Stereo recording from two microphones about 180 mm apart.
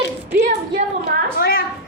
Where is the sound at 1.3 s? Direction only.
60° left (ahead or behind).